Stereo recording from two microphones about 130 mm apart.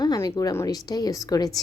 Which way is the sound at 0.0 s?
30° left (ahead or behind).